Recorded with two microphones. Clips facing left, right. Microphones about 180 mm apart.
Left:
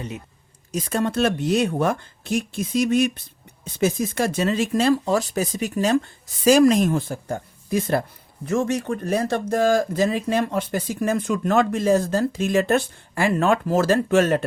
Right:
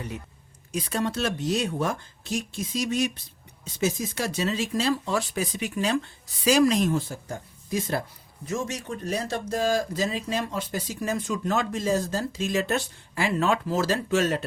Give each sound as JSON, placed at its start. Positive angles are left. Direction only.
{"t": 0.7, "sound": "speech", "side_deg": 45}